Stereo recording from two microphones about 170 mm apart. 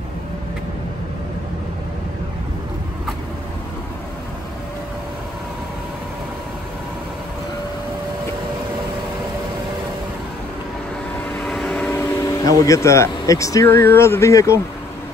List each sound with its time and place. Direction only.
11.3 s vehicle: 5° left (ahead or behind); by 12.5 s 20° left (ahead or behind)
12.6 s speech: 15° left (ahead or behind)